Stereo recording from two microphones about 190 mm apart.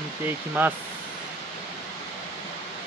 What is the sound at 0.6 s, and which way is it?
Speech, 10° right (ahead or behind).